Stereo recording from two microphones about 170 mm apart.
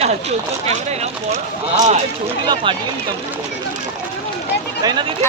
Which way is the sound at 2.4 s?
30° right (ahead or behind).